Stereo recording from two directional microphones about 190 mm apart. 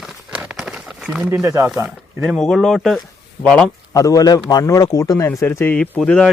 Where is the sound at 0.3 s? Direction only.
5° right (ahead or behind).